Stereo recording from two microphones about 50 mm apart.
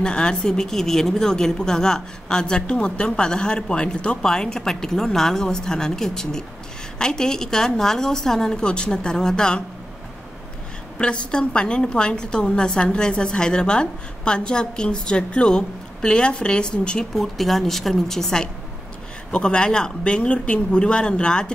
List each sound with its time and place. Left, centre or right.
0.0 s a woman's voice: centre
11.0 s a woman's voice: centre
17.1 s a woman's voice: centre